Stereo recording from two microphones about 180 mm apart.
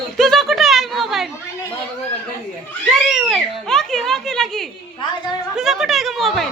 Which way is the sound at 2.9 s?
5° right (ahead or behind).